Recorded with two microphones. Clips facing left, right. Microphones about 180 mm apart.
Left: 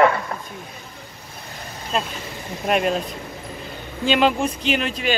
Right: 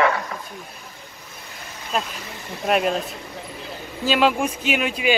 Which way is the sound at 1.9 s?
Centre (ahead or behind).